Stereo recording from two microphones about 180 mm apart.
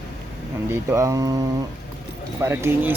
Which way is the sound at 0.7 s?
15° right (ahead or behind).